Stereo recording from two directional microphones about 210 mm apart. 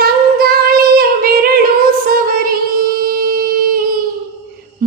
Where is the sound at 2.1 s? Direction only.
45° right (ahead or behind).